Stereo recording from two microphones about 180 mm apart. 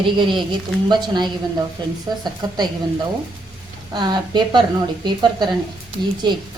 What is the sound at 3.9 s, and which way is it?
Speech, 25° right (ahead or behind).